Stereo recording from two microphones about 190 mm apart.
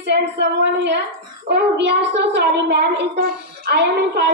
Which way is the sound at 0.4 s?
65° right (ahead or behind).